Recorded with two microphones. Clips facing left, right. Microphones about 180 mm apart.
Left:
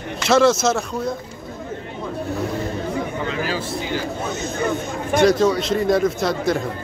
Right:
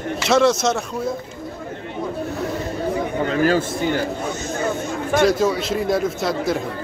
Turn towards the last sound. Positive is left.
turn(degrees=0)  # may be behind; listen again after turning